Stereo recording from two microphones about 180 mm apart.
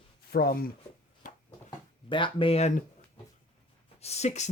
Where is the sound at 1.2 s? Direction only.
45° left (ahead or behind).